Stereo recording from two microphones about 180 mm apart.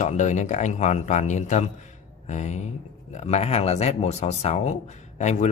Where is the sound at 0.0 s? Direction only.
40° left (ahead or behind).